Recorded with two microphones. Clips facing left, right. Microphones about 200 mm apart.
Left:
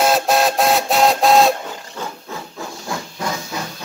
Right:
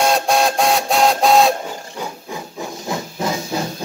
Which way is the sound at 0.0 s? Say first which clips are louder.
Even; centre (ahead or behind).